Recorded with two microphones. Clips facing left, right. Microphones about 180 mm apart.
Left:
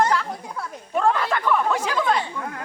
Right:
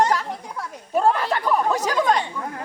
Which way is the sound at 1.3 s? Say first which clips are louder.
Right 1 dB; 35° right (ahead or behind).